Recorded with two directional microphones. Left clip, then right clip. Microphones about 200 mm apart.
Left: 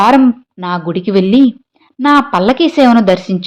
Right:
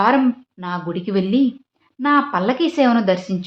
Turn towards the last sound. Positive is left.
turn(degrees=35)  # may be behind; listen again after turning